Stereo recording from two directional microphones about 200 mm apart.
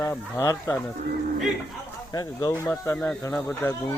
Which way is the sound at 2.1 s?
20° left (ahead or behind).